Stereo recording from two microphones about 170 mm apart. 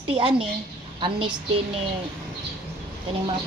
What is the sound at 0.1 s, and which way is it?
A woman's voice, 30° right (ahead or behind).